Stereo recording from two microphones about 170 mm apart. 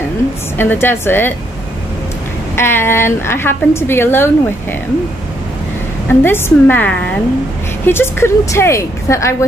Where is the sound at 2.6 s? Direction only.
15° left (ahead or behind).